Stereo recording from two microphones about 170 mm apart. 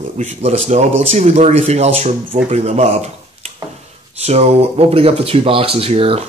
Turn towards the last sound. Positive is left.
turn(degrees=-35)  # may be behind; listen again after turning